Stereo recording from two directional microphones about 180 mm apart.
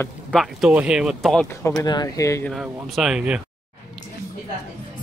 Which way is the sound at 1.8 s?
20° left (ahead or behind).